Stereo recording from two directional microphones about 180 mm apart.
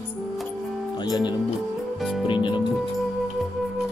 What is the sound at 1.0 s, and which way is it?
Music, 25° left (ahead or behind).